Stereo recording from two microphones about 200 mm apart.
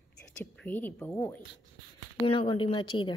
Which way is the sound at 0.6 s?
10° left (ahead or behind).